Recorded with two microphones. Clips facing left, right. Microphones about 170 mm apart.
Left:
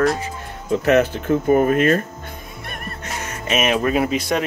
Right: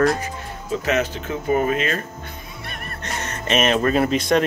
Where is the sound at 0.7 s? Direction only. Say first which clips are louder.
Left 6 dB; 55° left (ahead or behind).